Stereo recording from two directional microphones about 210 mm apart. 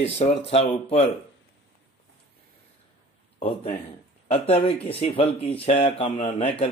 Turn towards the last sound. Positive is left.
turn(degrees=30)  # may be behind; listen again after turning